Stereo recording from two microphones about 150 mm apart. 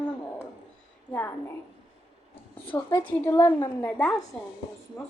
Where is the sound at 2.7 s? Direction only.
15° left (ahead or behind).